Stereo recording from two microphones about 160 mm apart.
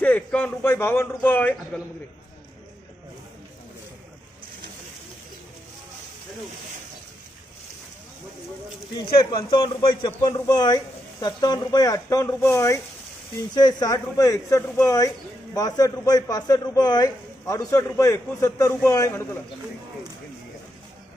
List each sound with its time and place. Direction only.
0.0 s a man's voice: 10° left (ahead or behind)
9.1 s a man's voice: 30° left (ahead or behind)